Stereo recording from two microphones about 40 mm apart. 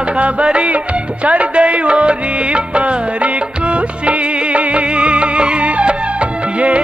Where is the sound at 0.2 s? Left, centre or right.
Right.